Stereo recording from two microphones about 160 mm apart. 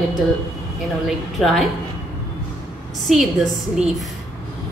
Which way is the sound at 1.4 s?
Centre (ahead or behind).